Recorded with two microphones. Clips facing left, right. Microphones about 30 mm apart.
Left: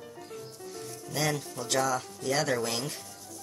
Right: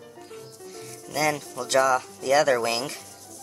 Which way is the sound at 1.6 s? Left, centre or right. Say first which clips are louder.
Right 8 dB; right.